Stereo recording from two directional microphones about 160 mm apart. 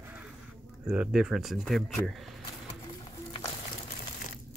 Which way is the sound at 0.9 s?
5° right (ahead or behind).